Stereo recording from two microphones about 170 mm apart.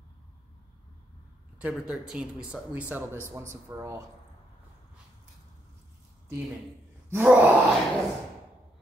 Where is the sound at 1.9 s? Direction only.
5° right (ahead or behind).